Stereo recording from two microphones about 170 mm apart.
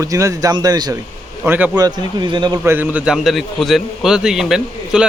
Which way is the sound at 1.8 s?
25° right (ahead or behind).